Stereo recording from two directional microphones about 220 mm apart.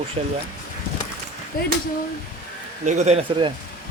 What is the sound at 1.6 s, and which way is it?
Speech, 40° left (ahead or behind).